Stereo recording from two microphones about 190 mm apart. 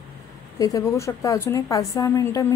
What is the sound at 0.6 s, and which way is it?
A woman's voice, 15° left (ahead or behind).